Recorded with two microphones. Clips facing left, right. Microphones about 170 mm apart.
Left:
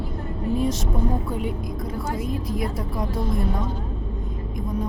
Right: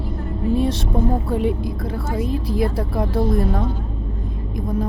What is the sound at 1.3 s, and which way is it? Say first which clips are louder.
Speech: right 7 dB; 30° right (ahead or behind).